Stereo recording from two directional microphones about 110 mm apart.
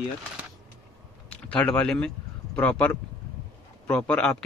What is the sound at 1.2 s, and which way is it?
Speech, 10° left (ahead or behind).